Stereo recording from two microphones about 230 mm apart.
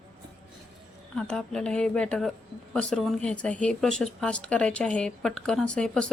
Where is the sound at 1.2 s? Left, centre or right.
Centre.